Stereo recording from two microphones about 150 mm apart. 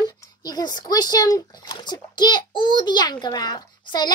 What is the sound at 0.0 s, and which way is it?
Speech, 25° left (ahead or behind).